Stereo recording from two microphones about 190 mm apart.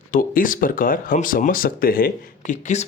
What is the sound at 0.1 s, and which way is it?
Speech, 45° left (ahead or behind).